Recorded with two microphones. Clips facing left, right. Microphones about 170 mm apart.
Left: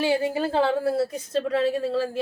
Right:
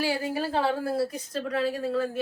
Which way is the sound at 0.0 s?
25° left (ahead or behind).